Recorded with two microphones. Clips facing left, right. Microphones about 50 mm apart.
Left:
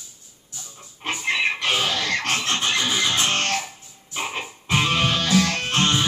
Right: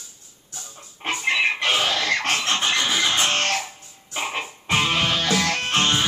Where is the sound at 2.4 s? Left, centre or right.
Right.